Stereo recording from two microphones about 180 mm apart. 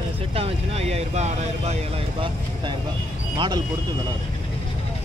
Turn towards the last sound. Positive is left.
turn(degrees=-25)  # may be behind; listen again after turning